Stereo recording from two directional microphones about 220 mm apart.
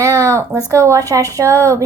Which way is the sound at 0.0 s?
15° right (ahead or behind).